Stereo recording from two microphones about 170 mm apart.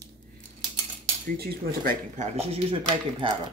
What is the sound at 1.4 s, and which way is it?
Speech, 60° right (ahead or behind).